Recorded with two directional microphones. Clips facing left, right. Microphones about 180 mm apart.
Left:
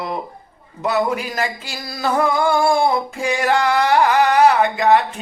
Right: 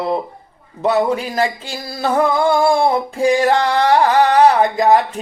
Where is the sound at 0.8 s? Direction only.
30° right (ahead or behind).